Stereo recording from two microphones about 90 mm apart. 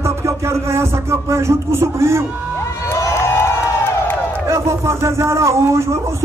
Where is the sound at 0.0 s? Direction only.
30° right (ahead or behind).